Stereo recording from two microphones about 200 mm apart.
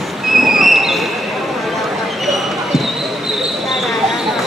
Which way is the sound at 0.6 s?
Centre (ahead or behind).